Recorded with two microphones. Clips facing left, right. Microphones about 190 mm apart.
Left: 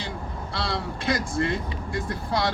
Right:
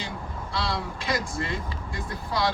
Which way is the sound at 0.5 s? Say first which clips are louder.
Even; 55° left (ahead or behind).